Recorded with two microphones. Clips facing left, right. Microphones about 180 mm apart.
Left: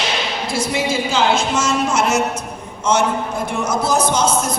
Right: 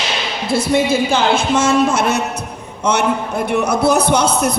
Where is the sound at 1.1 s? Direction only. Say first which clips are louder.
Right 2 dB; 55° right (ahead or behind).